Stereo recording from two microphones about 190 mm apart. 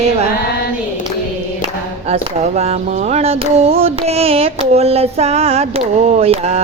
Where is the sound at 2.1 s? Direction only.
35° right (ahead or behind).